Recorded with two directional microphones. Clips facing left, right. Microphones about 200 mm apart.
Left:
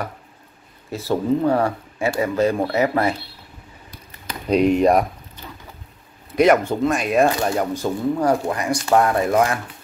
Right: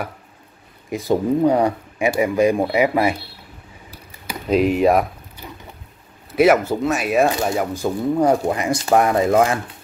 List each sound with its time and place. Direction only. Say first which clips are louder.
0.8 s speech: right 2 dB; 15° right (ahead or behind)
3.9 s typing: right 2 dB; 5° right (ahead or behind)
5.4 s boat: right 2 dB; 10° right (ahead or behind)
6.3 s speech: right 1 dB; 5° right (ahead or behind)
8.2 s speech: right 6 dB; 20° right (ahead or behind)